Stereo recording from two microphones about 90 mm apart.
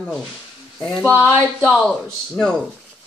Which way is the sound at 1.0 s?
20° left (ahead or behind).